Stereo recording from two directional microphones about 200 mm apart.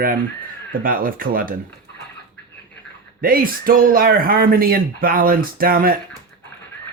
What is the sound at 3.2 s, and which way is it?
Speech, 45° right (ahead or behind).